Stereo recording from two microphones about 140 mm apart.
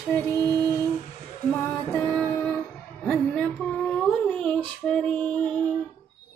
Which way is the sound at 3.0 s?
5° left (ahead or behind).